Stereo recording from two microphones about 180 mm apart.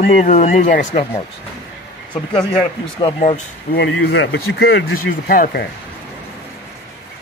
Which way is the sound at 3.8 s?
80° left.